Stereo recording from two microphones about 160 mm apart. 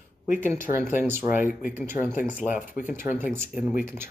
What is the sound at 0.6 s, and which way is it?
Speech, 15° right (ahead or behind).